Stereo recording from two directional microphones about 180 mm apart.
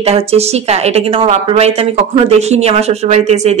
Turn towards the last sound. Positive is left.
turn(degrees=-40)  # may be behind; listen again after turning